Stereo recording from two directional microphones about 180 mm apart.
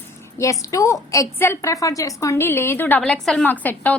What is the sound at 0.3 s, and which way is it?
A woman's voice, 15° left (ahead or behind).